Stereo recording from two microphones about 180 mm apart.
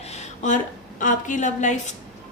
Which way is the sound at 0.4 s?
45° left (ahead or behind).